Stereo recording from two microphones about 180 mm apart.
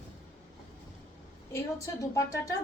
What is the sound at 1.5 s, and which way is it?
Speech, 15° left (ahead or behind).